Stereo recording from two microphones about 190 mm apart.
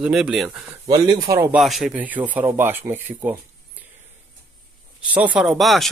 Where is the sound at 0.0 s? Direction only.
5° right (ahead or behind).